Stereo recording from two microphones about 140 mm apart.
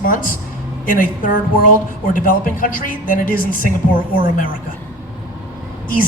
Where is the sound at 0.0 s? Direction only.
80° left.